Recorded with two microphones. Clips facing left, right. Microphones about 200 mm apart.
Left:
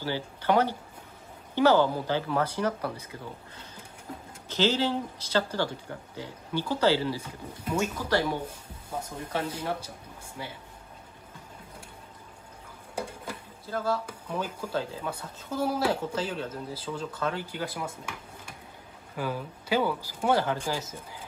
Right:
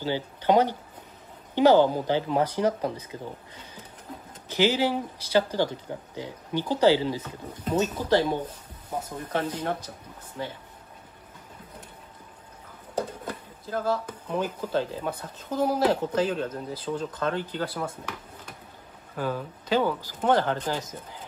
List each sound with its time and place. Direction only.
0.0 s speech: 15° right (ahead or behind)
7.2 s speech: 10° left (ahead or behind)
9.0 s speech: 10° left (ahead or behind)
12.9 s a sound: 10° left (ahead or behind)
14.0 s speech: 10° left (ahead or behind)
19.1 s speech: 10° left (ahead or behind)